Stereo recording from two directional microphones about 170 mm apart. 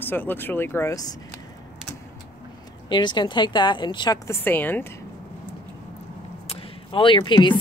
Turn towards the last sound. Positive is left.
turn(degrees=30)  # may be behind; listen again after turning